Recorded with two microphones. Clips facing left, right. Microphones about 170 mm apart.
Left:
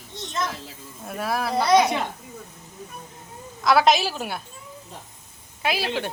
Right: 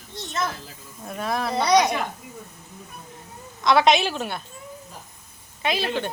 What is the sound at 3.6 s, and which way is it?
Speech, 5° left (ahead or behind).